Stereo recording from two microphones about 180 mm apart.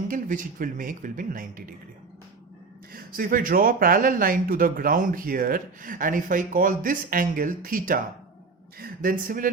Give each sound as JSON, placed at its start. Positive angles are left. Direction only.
{"t": 0.1, "sound": "speech", "side_deg": -50}
{"t": 2.9, "sound": "speech", "side_deg": -50}